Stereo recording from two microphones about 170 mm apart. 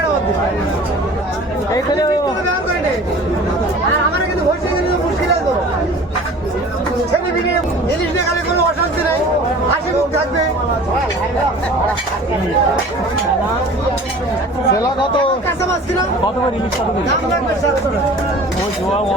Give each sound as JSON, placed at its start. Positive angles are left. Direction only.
{"t": 14.7, "sound": "speech", "side_deg": 30}